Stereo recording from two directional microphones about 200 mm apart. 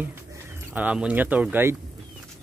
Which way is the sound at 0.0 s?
10° right (ahead or behind).